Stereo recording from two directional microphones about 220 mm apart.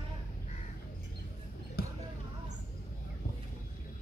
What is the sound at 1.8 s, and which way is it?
Basketball bounce, 45° left (ahead or behind).